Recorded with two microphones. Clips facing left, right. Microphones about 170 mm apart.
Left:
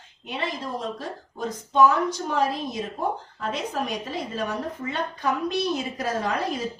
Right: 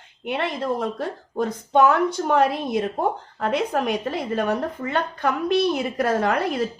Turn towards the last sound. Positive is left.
turn(degrees=-60)  # may be behind; listen again after turning